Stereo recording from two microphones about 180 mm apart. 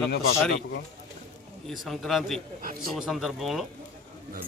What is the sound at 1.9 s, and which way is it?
Speech, centre (ahead or behind).